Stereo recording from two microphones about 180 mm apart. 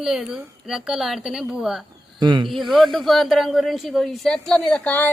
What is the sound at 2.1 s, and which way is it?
Speech, 25° right (ahead or behind).